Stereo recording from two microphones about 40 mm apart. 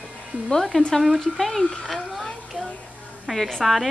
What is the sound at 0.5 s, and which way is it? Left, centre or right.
Speech, centre.